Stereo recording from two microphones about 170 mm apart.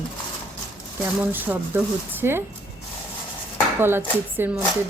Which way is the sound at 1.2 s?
10° right (ahead or behind).